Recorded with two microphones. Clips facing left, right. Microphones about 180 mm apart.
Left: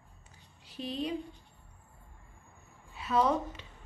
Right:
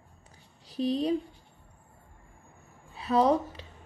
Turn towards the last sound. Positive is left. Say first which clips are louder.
# right 4 dB
turn(degrees=-35)  # may be behind; listen again after turning